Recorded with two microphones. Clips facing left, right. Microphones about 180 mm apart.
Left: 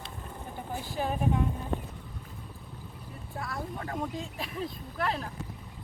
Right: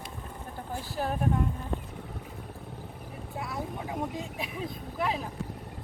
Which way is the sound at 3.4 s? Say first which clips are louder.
Right 1 dB; 5° right (ahead or behind).